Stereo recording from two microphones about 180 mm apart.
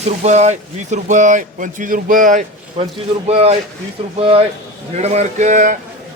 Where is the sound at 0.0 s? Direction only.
40° right (ahead or behind).